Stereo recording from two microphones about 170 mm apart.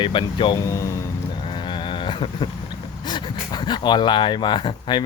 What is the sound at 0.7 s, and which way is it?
Speech, 15° left (ahead or behind).